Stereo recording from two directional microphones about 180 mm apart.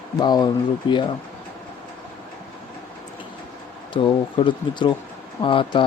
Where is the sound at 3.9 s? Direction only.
30° left (ahead or behind).